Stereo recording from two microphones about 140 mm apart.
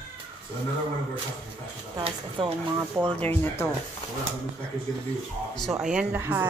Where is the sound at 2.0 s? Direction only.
35° right (ahead or behind).